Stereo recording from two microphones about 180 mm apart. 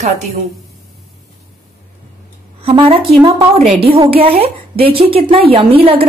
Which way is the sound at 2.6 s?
30° right (ahead or behind).